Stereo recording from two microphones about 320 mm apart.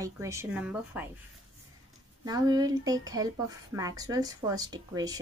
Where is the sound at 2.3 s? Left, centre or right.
Centre.